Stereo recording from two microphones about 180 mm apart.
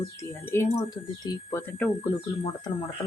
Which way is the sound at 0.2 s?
15° left (ahead or behind).